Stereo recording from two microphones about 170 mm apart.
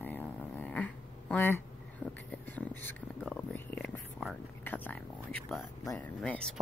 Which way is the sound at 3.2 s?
10° left (ahead or behind).